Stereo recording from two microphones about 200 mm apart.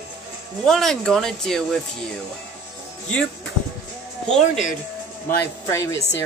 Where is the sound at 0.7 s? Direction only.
Centre (ahead or behind).